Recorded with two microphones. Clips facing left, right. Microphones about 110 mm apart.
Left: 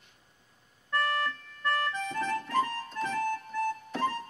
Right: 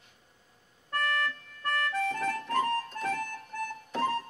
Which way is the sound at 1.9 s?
55° right (ahead or behind).